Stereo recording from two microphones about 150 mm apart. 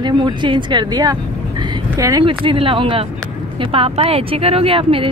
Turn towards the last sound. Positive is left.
turn(degrees=-35)  # may be behind; listen again after turning